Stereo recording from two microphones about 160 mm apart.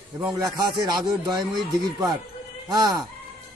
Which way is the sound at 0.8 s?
25° right (ahead or behind).